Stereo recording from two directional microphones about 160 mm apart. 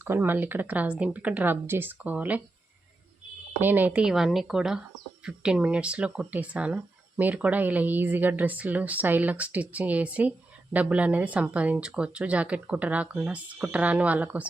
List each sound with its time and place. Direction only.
0.0 s speech: 15° right (ahead or behind)
3.6 s speech: 10° right (ahead or behind)